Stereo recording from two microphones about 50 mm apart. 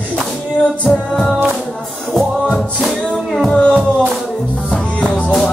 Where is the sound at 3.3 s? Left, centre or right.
Centre.